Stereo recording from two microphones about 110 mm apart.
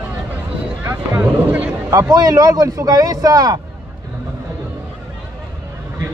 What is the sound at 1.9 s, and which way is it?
Speech, 30° right (ahead or behind).